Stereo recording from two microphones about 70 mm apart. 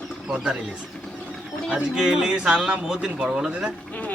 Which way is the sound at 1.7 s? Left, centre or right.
Centre.